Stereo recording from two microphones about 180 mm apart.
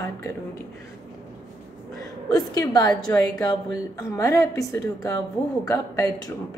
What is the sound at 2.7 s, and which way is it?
A woman's voice, 20° left (ahead or behind).